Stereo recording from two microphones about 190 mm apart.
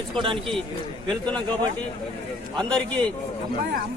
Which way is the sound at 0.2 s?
25° right (ahead or behind).